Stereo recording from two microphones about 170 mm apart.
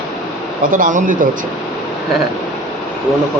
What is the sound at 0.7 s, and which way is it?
Speech, 50° right (ahead or behind).